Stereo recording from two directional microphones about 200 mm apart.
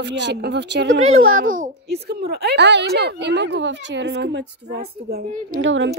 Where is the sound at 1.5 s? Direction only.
50° right (ahead or behind).